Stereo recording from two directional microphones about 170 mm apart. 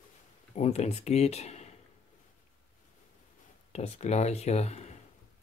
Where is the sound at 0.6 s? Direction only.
40° left (ahead or behind).